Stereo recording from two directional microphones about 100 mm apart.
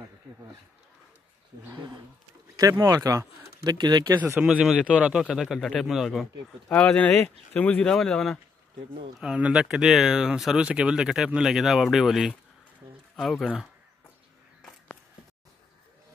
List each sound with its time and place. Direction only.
2.9 s speech: 35° right (ahead or behind)
4.4 s speech: 10° right (ahead or behind)
6.7 s speech: 15° left (ahead or behind)
9.2 s speech: 10° right (ahead or behind)